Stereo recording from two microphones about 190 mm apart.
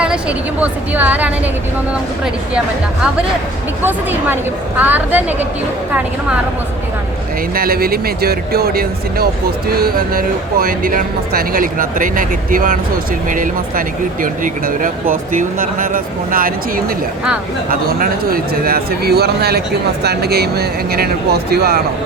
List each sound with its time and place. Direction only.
0.0 s a woman's voice: 5° right (ahead or behind)
3.8 s a woman's voice: 10° right (ahead or behind)
7.5 s speech: 50° right (ahead or behind)